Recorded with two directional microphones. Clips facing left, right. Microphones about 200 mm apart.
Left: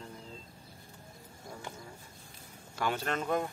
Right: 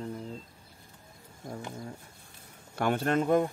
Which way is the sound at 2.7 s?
55° right (ahead or behind).